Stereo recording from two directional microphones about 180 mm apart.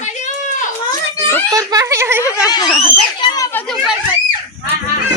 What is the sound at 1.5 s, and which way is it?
Speech, 20° right (ahead or behind).